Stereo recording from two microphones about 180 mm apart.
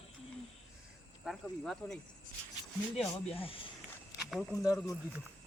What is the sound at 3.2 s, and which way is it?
Speech, 30° left (ahead or behind).